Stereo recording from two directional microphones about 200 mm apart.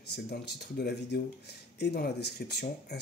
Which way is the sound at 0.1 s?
55° left (ahead or behind).